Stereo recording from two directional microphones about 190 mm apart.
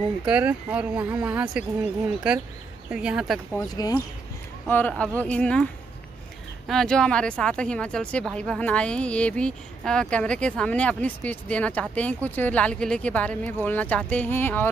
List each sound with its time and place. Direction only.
0.2 s speech: 5° right (ahead or behind)
2.9 s speech: 5° right (ahead or behind)
3.5 s speech: 20° left (ahead or behind)
4.6 s speech: 10° left (ahead or behind)
6.7 s speech: 5° left (ahead or behind)